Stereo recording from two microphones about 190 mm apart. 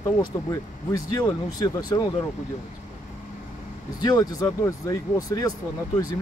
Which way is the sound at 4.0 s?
20° left (ahead or behind).